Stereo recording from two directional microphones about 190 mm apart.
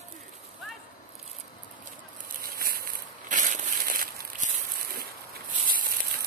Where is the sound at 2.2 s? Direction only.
50° right (ahead or behind).